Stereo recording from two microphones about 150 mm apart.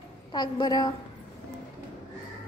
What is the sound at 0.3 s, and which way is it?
Speech, 30° left (ahead or behind).